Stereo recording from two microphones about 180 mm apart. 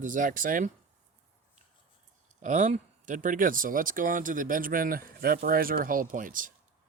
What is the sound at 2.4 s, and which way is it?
Speech, 40° right (ahead or behind).